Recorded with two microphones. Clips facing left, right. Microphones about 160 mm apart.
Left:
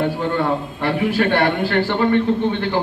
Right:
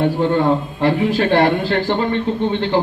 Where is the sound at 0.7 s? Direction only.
30° right (ahead or behind).